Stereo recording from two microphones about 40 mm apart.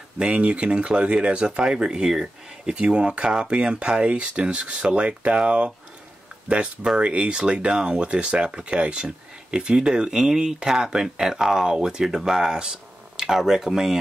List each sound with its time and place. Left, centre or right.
0.3 s speech: right
2.7 s speech: right
6.5 s speech: right; by 13.9 s centre